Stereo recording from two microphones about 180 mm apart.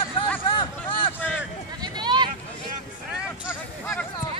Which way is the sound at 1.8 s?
25° right (ahead or behind).